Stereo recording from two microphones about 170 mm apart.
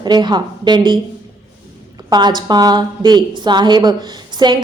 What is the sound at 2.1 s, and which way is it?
A woman's voice, 25° right (ahead or behind).